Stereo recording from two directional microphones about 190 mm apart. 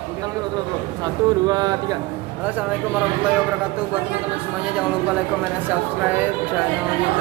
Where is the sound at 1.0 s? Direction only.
20° right (ahead or behind).